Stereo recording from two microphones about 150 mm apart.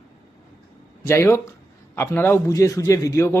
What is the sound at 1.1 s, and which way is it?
Speech, 15° left (ahead or behind).